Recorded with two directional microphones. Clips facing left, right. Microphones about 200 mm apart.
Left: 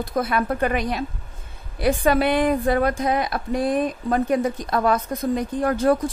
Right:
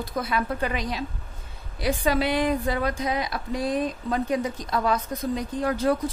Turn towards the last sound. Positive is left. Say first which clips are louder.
# left 4 dB
turn(degrees=50)  # may be behind; listen again after turning